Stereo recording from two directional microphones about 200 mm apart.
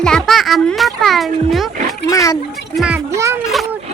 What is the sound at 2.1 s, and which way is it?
Speech, 15° left (ahead or behind).